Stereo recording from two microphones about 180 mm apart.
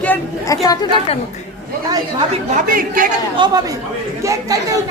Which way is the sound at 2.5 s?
50° right (ahead or behind).